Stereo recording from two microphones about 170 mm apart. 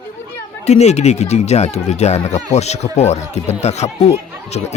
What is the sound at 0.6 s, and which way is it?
Speech, 40° left (ahead or behind).